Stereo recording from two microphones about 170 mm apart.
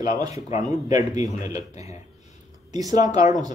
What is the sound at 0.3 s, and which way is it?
Speech, 40° left (ahead or behind).